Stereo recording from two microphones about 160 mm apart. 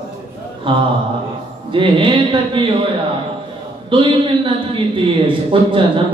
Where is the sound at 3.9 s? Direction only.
30° right (ahead or behind).